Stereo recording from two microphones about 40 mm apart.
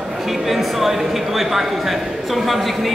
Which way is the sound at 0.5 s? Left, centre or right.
Centre.